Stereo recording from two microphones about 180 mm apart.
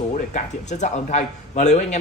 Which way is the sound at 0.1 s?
40° left (ahead or behind).